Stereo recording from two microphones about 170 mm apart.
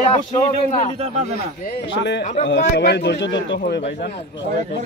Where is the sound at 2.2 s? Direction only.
45° left (ahead or behind).